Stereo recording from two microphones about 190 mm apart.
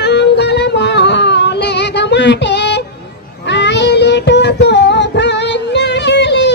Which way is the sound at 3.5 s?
65° left (ahead or behind).